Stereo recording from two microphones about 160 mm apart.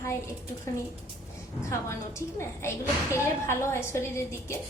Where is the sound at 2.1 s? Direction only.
15° left (ahead or behind).